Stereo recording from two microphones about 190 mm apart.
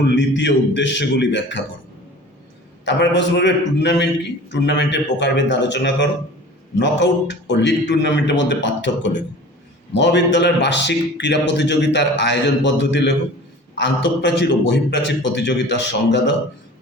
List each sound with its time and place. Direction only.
0.0 s a man's voice: 70° left (ahead or behind)
2.8 s a man's voice: 70° left (ahead or behind)